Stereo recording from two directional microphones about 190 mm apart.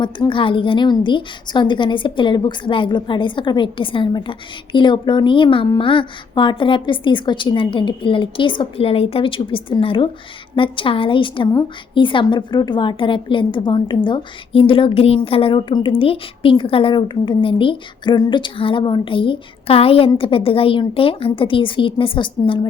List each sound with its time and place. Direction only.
0.0 s a woman's voice: 25° left (ahead or behind)